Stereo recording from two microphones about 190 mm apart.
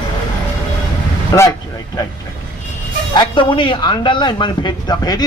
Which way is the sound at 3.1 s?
25° left (ahead or behind).